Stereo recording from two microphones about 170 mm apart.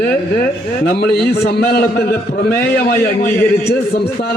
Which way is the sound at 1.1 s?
65° left (ahead or behind).